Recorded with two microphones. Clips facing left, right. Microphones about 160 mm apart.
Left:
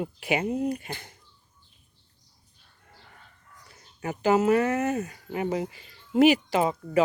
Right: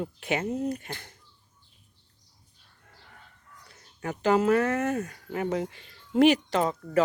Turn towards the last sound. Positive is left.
turn(degrees=10)  # may be behind; listen again after turning